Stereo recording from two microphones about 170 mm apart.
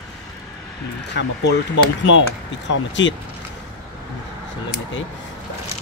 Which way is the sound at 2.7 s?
90° left.